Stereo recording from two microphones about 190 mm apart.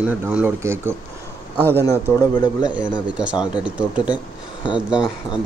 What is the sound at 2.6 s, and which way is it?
Speech, 5° right (ahead or behind).